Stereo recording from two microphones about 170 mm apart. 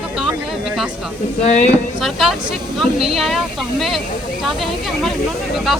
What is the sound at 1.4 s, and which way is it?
Speech, 45° left (ahead or behind).